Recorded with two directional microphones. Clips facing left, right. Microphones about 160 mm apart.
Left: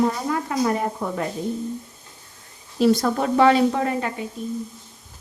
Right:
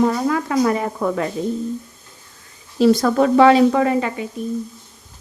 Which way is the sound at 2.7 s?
90° right.